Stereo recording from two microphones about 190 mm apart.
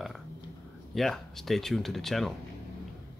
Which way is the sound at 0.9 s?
Centre (ahead or behind).